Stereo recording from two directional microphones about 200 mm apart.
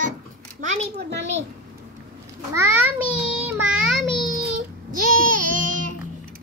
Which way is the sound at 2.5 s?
10° right (ahead or behind).